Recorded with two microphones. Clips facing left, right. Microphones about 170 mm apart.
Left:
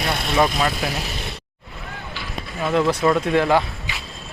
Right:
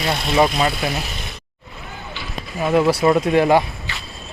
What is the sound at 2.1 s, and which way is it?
Speech, 5° right (ahead or behind).